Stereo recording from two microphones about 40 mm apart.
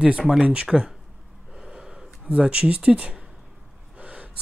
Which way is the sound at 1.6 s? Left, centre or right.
Right.